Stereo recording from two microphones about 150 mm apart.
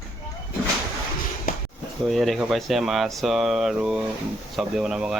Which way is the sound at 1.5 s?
75° left (ahead or behind).